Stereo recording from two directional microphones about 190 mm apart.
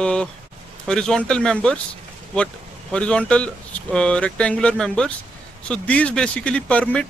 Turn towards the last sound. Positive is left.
turn(degrees=5)  # may be behind; listen again after turning